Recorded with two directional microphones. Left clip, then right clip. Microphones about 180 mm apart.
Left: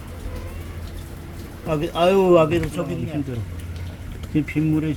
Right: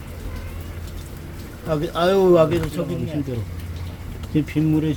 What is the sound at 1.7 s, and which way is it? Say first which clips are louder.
Speech: left 1 dB; 25° left (ahead or behind).